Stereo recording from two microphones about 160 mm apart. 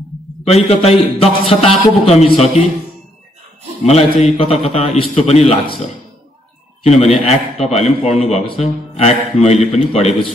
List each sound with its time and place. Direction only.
0.5 s a man's voice: 40° left (ahead or behind)
3.8 s a man's voice: 40° left (ahead or behind)
6.8 s a man's voice: 40° left (ahead or behind)